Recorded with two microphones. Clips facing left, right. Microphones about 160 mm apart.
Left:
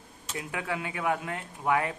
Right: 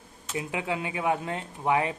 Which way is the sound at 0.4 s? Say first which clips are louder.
Right 3 dB; 20° right (ahead or behind).